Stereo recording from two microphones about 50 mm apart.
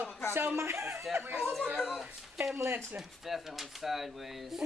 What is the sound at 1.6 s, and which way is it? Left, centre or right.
Speech, centre.